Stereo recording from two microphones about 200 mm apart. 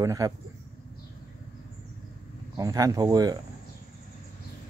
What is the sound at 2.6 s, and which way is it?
Speech, 20° right (ahead or behind).